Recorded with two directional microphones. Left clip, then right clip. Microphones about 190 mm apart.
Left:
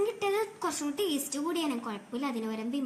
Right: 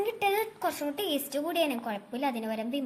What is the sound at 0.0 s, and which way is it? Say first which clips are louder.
A woman's voice: right 1 dB; 30° right (ahead or behind).